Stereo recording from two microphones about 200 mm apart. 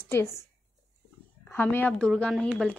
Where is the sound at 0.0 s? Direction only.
10° left (ahead or behind).